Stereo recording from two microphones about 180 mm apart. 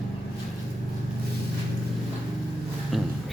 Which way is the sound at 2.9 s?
Centre (ahead or behind).